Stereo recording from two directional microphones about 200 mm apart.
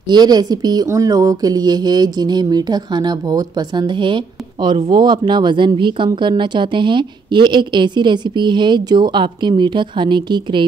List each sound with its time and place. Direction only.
0.1 s speech: 20° right (ahead or behind)